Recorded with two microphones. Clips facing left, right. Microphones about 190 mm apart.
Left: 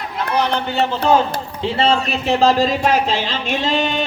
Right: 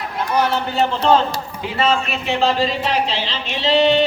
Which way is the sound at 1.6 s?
30° left (ahead or behind).